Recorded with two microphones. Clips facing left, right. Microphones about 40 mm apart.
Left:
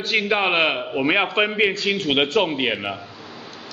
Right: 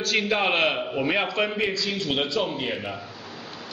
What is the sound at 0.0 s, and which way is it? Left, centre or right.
A man's voice, left.